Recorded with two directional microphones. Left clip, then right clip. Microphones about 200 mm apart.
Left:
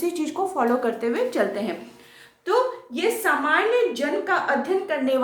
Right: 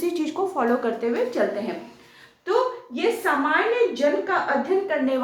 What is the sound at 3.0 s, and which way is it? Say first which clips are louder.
A woman's voice: even; 55° left (ahead or behind).